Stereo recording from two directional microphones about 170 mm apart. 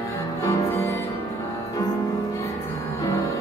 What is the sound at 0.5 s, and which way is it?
Music, 15° left (ahead or behind).